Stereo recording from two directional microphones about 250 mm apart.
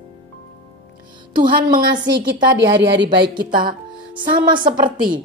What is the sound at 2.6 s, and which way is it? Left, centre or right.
Speech, right.